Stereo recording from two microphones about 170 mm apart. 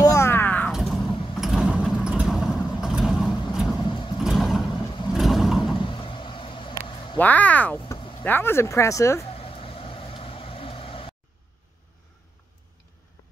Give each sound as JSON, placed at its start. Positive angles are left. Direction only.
{"t": 0.0, "sound": "a sound", "side_deg": 15}
{"t": 0.7, "sound": "a sound", "side_deg": 0}
{"t": 1.3, "sound": "vehicle", "side_deg": 0}
{"t": 3.8, "sound": "vehicle", "side_deg": 30}
{"t": 4.2, "sound": "vehicle", "side_deg": 0}
{"t": 4.6, "sound": "vehicle", "side_deg": 25}
{"t": 5.1, "sound": "vehicle", "side_deg": 0}
{"t": 5.8, "sound": "vehicle", "side_deg": 30}
{"t": 7.2, "sound": "speech", "side_deg": 10}
{"t": 9.2, "sound": "vehicle", "side_deg": 35}